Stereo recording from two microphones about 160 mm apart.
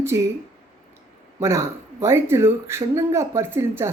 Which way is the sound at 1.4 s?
20° right (ahead or behind).